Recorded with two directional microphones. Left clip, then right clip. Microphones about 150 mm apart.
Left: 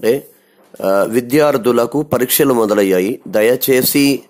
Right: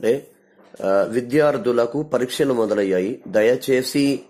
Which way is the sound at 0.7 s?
30° left (ahead or behind).